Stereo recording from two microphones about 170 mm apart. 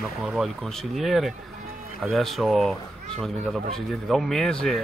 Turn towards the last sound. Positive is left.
turn(degrees=5)  # may be behind; listen again after turning